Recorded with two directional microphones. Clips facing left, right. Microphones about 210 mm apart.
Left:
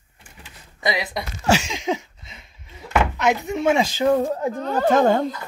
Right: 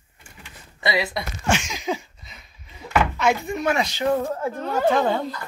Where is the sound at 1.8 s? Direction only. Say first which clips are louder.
Left 2 dB; 25° left (ahead or behind).